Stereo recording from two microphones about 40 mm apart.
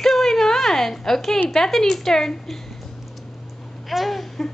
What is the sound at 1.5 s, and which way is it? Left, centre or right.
A child's voice, centre.